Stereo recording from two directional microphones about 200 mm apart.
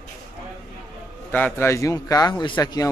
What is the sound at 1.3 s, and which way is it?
Speech, 10° left (ahead or behind).